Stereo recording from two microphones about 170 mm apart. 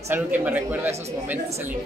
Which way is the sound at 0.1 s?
10° right (ahead or behind).